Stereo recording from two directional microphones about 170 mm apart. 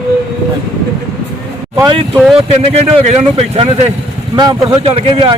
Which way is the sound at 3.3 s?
35° right (ahead or behind).